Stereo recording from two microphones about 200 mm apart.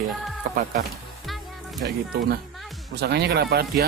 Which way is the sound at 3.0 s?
55° right (ahead or behind).